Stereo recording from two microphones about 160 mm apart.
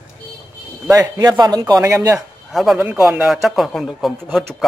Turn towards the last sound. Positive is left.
turn(degrees=0)  # may be behind; listen again after turning